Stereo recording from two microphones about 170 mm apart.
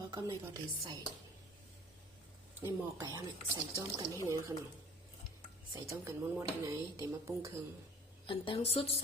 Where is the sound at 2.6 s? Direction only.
20° right (ahead or behind).